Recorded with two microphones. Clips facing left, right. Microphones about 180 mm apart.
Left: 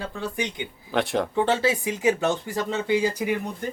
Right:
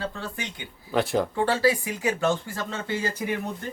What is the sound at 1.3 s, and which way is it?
Speech, 20° left (ahead or behind).